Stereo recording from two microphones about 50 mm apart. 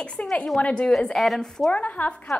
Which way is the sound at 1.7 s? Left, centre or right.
Left.